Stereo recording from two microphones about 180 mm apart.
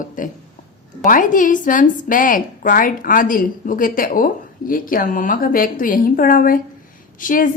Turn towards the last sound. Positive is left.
turn(degrees=50)  # may be behind; listen again after turning